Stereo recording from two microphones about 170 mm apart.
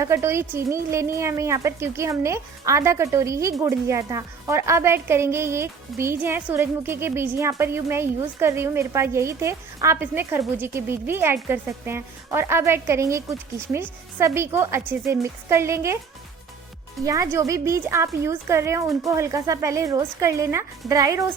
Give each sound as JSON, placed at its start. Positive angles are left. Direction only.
{"t": 0.0, "sound": "a woman's voice", "side_deg": -15}
{"t": 17.0, "sound": "a woman's voice", "side_deg": 0}
{"t": 17.3, "sound": "a woman's voice", "side_deg": -15}